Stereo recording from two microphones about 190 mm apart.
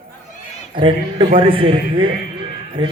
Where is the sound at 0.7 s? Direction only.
25° right (ahead or behind).